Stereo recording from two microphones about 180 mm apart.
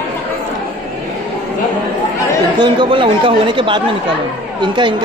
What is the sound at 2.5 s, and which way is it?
Speech, 30° right (ahead or behind).